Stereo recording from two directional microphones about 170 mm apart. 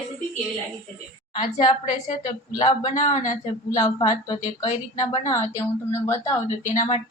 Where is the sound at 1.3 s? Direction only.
35° left (ahead or behind).